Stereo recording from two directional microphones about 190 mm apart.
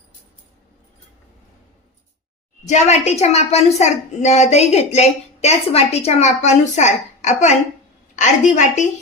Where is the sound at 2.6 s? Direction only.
35° left (ahead or behind).